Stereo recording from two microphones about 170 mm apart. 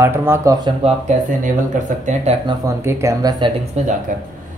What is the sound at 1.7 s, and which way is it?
Speech, 45° right (ahead or behind).